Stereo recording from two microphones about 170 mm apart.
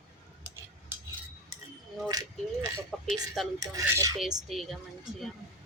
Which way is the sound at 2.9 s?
Centre (ahead or behind).